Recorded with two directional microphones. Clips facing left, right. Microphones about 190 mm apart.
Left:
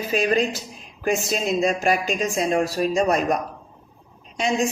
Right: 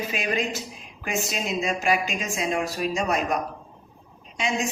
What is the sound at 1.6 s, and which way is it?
Speech, 40° left (ahead or behind).